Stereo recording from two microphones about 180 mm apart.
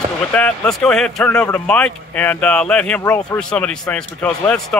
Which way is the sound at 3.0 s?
20° left (ahead or behind).